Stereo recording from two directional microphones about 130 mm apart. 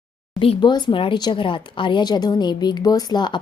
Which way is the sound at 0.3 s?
40° left (ahead or behind).